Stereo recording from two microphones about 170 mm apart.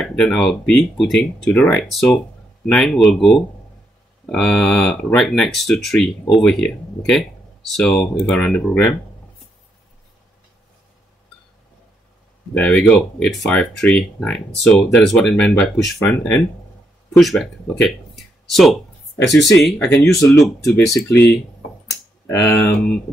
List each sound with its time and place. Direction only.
0.0 s speech: 5° left (ahead or behind)
12.5 s speech: 5° left (ahead or behind)